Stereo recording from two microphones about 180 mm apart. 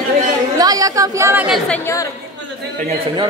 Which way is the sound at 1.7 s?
15° left (ahead or behind).